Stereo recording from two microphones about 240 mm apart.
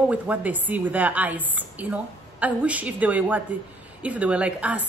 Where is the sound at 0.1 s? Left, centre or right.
Centre.